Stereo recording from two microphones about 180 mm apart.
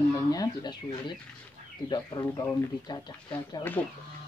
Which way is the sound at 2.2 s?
15° left (ahead or behind).